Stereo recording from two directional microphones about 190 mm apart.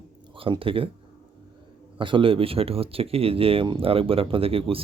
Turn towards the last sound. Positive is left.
turn(degrees=-30)  # may be behind; listen again after turning